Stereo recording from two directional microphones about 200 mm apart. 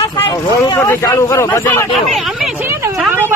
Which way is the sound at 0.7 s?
15° left (ahead or behind).